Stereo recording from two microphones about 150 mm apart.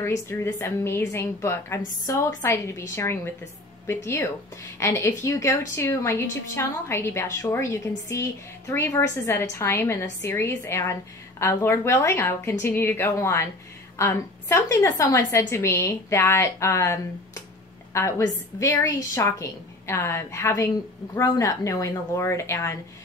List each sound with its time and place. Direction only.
0.0 s a woman's voice: 15° left (ahead or behind)